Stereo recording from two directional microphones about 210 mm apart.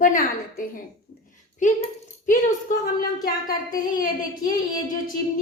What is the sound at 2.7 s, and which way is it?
A woman's voice, 40° left (ahead or behind).